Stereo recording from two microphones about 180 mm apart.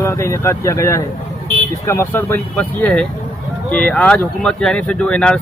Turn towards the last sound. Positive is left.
turn(degrees=5)  # may be behind; listen again after turning